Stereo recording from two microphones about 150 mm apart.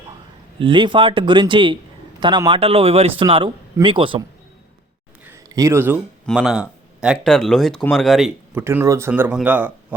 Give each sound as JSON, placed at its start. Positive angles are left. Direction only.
{"t": 0.6, "sound": "speech", "side_deg": -35}
{"t": 5.2, "sound": "a sound", "side_deg": -20}
{"t": 6.3, "sound": "speech", "side_deg": -5}
{"t": 8.5, "sound": "speech", "side_deg": -15}